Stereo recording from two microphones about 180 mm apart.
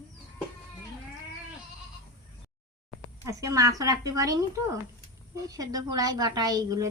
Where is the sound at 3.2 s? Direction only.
20° right (ahead or behind).